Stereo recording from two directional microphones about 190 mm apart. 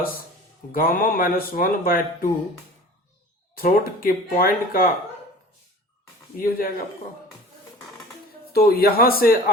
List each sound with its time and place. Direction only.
0.7 s speech: 50° left (ahead or behind)
3.5 s speech: 50° left (ahead or behind)
6.3 s speech: 50° left (ahead or behind)
8.5 s speech: 50° left (ahead or behind)